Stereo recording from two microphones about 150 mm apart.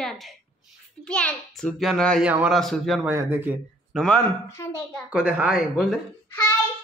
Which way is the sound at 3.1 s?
15° right (ahead or behind).